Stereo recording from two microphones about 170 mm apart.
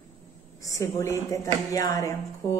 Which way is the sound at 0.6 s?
20° left (ahead or behind).